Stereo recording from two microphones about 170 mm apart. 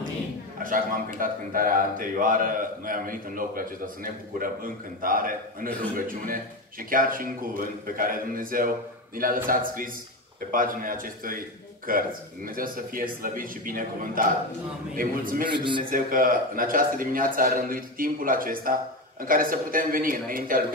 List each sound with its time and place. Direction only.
1.2 s a man's voice: 55° right (ahead or behind)
15.5 s a man's voice: 30° right (ahead or behind)
15.9 s a man's voice: 55° right (ahead or behind)